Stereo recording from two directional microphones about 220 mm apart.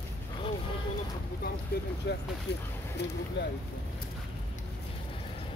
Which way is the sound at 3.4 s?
50° left (ahead or behind).